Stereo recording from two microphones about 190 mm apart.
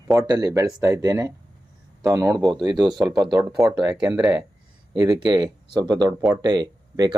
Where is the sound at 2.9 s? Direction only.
Centre (ahead or behind).